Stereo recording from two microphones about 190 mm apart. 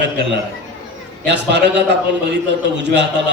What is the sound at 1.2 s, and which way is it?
A man's voice, 65° right (ahead or behind).